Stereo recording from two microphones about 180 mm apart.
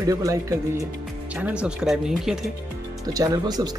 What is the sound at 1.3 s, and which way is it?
Speech, 5° right (ahead or behind).